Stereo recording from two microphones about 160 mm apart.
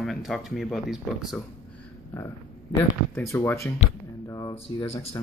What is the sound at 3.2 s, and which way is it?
Speech, 15° left (ahead or behind).